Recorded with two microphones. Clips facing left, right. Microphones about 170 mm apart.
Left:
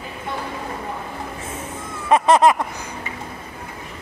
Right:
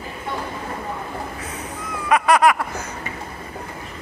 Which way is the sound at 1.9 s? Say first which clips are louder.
Left 2 dB; 25° left (ahead or behind).